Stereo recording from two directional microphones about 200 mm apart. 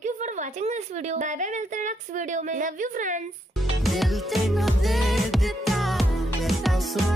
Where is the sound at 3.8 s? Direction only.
Centre (ahead or behind).